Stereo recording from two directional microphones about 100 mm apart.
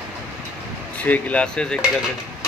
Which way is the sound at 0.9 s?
15° left (ahead or behind).